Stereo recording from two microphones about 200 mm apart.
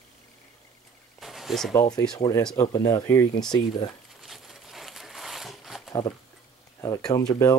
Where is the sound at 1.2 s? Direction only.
Centre (ahead or behind).